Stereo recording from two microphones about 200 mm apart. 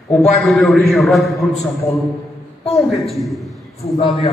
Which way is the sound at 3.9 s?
30° left (ahead or behind).